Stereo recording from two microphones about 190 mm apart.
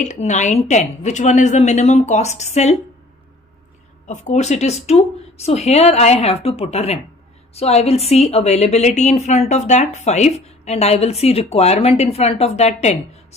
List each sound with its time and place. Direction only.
0.0 s a woman's voice: 40° left (ahead or behind)
4.1 s a woman's voice: 35° left (ahead or behind)